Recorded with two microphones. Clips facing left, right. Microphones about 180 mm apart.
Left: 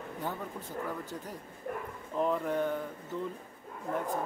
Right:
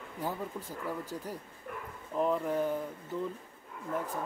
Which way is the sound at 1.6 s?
45° left (ahead or behind).